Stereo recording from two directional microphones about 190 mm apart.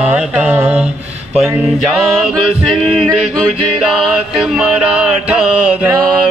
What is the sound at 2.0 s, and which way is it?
Mantra, centre (ahead or behind).